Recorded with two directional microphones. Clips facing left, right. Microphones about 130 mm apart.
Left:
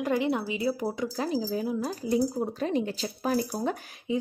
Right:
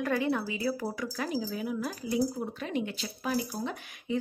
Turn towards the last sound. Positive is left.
turn(degrees=45)  # may be behind; listen again after turning